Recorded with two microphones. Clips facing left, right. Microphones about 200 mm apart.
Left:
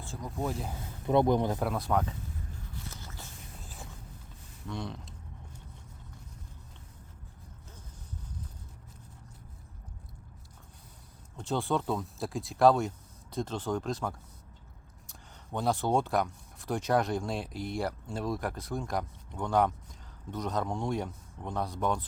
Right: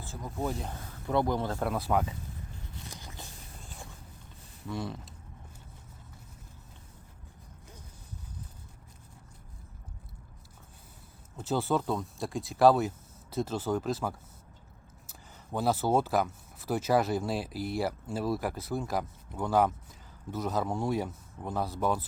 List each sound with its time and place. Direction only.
0.0 s speech: centre (ahead or behind)
1.0 s speech: 20° left (ahead or behind)
1.5 s speech: centre (ahead or behind)
2.9 s walk: 15° right (ahead or behind)
3.6 s a sound: centre (ahead or behind)
4.6 s speech: 5° right (ahead or behind)
11.3 s speech: 5° right (ahead or behind)
15.5 s speech: 5° right (ahead or behind)